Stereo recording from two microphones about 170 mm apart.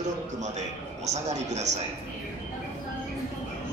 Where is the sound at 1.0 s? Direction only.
40° right (ahead or behind).